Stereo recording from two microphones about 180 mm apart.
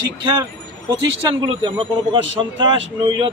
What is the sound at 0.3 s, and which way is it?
Vehicle, 25° right (ahead or behind).